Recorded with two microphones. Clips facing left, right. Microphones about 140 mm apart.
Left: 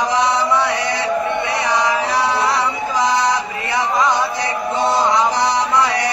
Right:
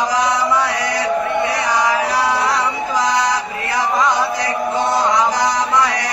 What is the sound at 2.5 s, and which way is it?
Music, 25° left (ahead or behind).